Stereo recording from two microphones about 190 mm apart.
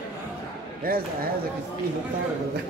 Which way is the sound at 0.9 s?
50° right (ahead or behind).